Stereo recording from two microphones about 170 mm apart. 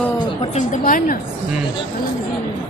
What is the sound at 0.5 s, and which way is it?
Speech, 50° left (ahead or behind).